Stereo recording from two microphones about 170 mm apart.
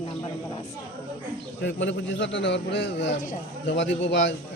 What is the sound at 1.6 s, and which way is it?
A man's voice, 90° left.